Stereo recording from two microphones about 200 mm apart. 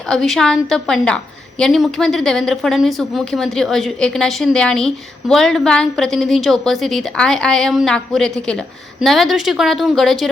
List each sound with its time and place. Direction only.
0.1 s a woman's voice: centre (ahead or behind)